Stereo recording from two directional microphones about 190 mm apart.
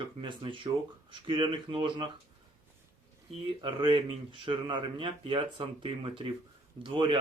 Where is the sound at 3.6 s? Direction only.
25° right (ahead or behind).